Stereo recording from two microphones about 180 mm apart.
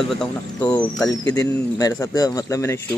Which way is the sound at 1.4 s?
20° left (ahead or behind).